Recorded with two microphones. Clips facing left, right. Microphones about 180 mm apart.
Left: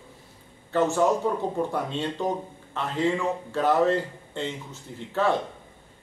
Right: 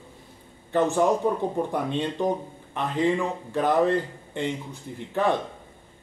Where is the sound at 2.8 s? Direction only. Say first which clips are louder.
Right 2 dB; 15° right (ahead or behind).